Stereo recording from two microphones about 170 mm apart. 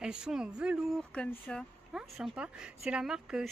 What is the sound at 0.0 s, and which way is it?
Speech, 5° right (ahead or behind).